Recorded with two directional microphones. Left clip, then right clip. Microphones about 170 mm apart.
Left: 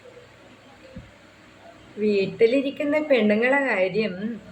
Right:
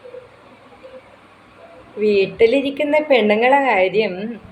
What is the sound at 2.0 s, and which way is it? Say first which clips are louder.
A woman's voice: right 6 dB; 15° left (ahead or behind).